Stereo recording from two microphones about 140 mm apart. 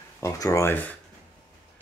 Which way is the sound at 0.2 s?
20° left (ahead or behind).